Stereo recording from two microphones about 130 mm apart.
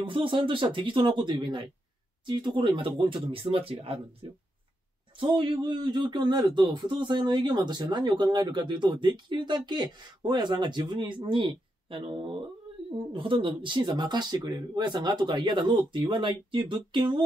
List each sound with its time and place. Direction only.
0.0 s a man's voice: 40° right (ahead or behind)
5.1 s a man's voice: 40° right (ahead or behind)